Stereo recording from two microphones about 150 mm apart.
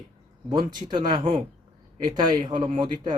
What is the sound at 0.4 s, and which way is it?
A man's voice, 30° right (ahead or behind).